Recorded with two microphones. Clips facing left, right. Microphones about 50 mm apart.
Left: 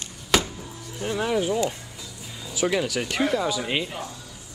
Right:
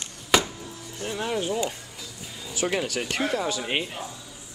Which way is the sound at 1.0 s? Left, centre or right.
Centre.